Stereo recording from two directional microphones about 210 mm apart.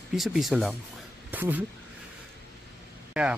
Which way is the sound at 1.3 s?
10° right (ahead or behind).